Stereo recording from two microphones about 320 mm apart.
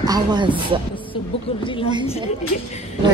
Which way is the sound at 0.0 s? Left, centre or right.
Centre.